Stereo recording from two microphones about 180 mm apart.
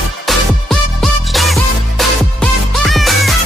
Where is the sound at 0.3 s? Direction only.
Centre (ahead or behind).